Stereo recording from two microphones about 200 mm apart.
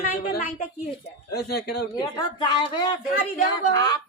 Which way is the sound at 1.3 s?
50° left (ahead or behind).